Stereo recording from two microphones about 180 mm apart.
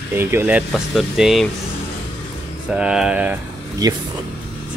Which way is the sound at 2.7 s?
5° right (ahead or behind).